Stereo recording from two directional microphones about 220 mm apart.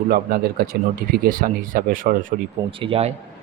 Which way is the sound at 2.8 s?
25° right (ahead or behind).